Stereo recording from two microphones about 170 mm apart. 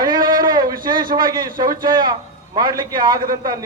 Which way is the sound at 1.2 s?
25° right (ahead or behind).